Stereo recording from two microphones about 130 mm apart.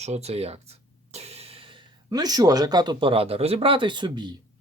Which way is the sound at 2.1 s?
30° right (ahead or behind).